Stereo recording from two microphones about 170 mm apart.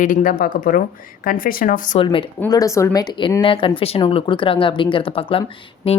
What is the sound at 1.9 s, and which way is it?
Speech, 30° left (ahead or behind).